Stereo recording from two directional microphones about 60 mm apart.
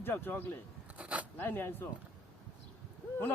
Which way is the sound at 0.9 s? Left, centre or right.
Right.